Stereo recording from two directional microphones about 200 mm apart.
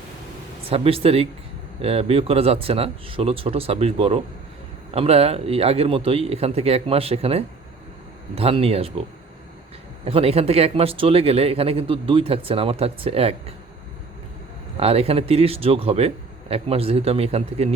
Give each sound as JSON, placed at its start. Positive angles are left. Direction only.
{"t": 0.7, "sound": "speech", "side_deg": -30}
{"t": 10.1, "sound": "speech", "side_deg": -30}
{"t": 14.8, "sound": "speech", "side_deg": -30}